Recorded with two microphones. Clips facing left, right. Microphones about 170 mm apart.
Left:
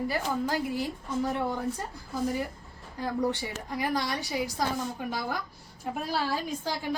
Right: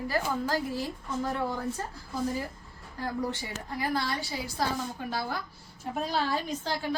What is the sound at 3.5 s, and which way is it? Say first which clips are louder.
A woman's voice: left 1 dB; 15° left (ahead or behind).